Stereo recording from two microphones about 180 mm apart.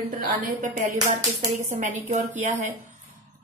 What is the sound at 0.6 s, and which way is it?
A woman's voice, 45° right (ahead or behind).